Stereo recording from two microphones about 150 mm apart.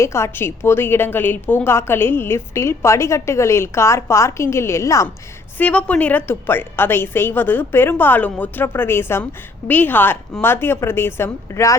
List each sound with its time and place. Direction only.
0.0 s a woman's voice: 15° left (ahead or behind)
5.5 s a woman's voice: 10° left (ahead or behind)